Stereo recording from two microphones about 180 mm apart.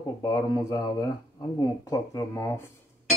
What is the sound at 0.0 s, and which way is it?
Speech, 20° left (ahead or behind).